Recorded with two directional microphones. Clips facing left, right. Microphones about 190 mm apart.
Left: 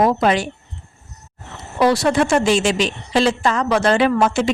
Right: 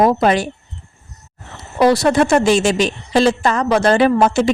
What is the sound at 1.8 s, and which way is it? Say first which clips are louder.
A woman's voice: right 3 dB; 40° right (ahead or behind).